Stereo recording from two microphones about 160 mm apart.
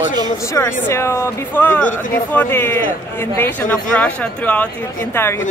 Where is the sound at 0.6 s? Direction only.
15° left (ahead or behind).